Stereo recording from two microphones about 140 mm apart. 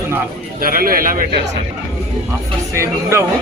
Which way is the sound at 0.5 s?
90° right.